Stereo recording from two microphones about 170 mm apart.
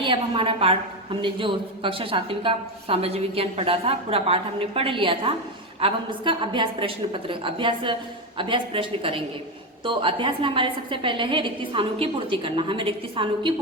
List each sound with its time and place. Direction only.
0.0 s a woman's voice: 30° right (ahead or behind)